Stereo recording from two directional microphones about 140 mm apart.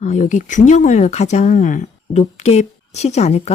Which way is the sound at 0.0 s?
60° left (ahead or behind).